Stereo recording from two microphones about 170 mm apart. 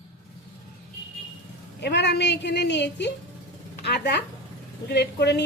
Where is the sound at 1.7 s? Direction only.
85° left.